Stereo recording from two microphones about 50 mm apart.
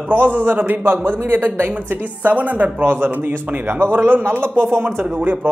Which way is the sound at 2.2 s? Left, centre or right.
Right.